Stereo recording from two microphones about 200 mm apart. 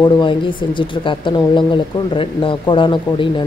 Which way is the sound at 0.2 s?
25° left (ahead or behind).